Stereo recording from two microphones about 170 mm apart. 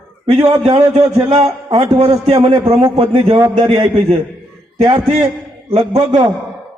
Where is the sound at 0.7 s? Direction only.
35° right (ahead or behind).